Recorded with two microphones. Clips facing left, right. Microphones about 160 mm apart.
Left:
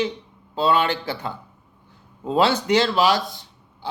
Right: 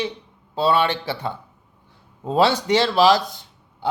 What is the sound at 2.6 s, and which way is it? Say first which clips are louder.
Speech: right 2 dB; 35° right (ahead or behind).